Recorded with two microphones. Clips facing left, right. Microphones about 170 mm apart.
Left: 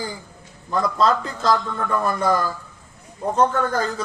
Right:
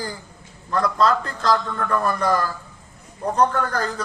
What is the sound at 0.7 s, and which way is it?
A man's voice, centre (ahead or behind).